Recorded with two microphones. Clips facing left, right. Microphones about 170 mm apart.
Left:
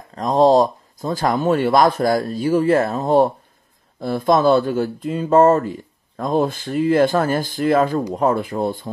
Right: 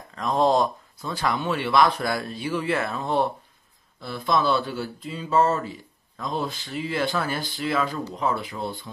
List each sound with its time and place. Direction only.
0.1 s speech: 35° left (ahead or behind)